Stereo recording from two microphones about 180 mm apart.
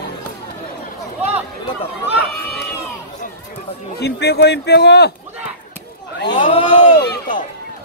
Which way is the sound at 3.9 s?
65° left (ahead or behind).